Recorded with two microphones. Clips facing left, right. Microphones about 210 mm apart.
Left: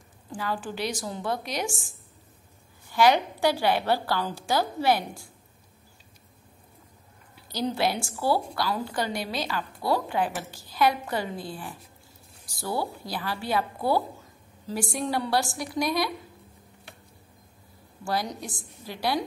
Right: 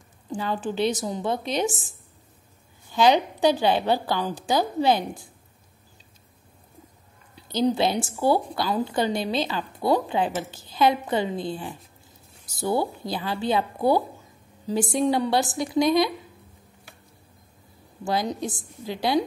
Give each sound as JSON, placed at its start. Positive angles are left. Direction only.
{"t": 0.3, "sound": "a woman's voice", "side_deg": -25}
{"t": 7.3, "sound": "a woman's voice", "side_deg": -20}
{"t": 18.0, "sound": "a woman's voice", "side_deg": -20}